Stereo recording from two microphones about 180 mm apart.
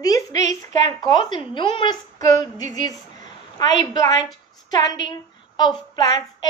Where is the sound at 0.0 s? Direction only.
20° left (ahead or behind).